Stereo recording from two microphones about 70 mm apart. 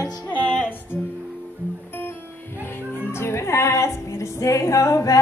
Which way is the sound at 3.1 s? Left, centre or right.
Left.